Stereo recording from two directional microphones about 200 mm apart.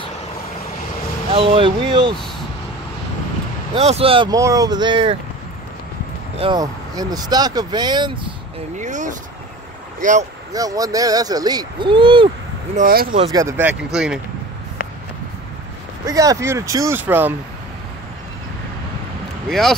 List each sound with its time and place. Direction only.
1.3 s speech: 25° right (ahead or behind)
3.7 s speech: 30° right (ahead or behind)
6.3 s speech: 25° right (ahead or behind)
8.7 s speech: 40° right (ahead or behind)
10.5 s speech: 20° right (ahead or behind)
12.7 s speech: 45° right (ahead or behind)
13.3 s speech: 15° right (ahead or behind)
16.1 s speech: 15° right (ahead or behind)